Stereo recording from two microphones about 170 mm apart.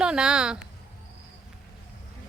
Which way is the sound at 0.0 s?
5° right (ahead or behind).